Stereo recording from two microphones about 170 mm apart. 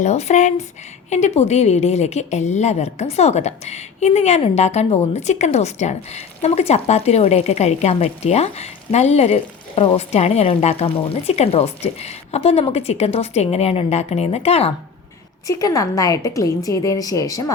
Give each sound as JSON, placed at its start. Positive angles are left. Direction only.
{"t": 0.0, "sound": "a woman's voice", "side_deg": 40}
{"t": 15.4, "sound": "a woman's voice", "side_deg": 20}